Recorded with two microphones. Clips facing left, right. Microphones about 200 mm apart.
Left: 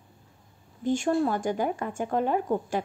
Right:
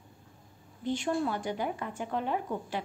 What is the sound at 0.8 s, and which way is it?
A woman's voice, 45° left (ahead or behind).